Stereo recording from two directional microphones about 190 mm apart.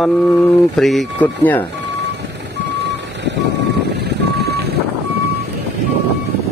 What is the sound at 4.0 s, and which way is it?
Vehicle, 60° right (ahead or behind).